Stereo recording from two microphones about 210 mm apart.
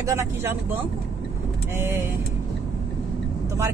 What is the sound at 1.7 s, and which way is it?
Speech, 10° right (ahead or behind).